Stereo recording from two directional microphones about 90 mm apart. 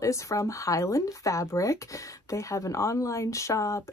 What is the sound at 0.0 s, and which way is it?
Speech, 35° left (ahead or behind).